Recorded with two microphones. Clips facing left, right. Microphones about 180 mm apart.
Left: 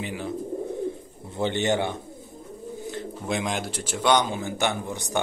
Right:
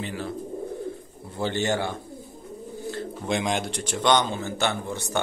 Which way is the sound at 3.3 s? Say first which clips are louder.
Right 2 dB; centre (ahead or behind).